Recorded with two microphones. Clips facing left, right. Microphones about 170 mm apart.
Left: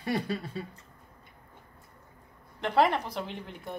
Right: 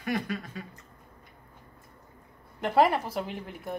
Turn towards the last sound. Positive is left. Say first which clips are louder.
# right 2 dB
turn(degrees=-5)  # may be behind; listen again after turning